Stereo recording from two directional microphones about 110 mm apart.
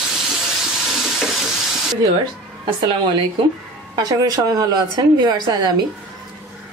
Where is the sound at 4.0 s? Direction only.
35° right (ahead or behind).